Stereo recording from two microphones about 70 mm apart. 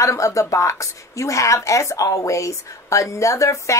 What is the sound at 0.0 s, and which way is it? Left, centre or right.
A woman's voice, left.